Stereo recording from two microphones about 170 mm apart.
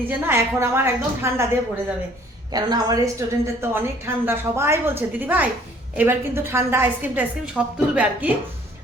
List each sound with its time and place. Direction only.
0.1 s a woman's voice: 15° right (ahead or behind)
2.5 s a woman's voice: 25° right (ahead or behind); by 8.3 s 5° right (ahead or behind)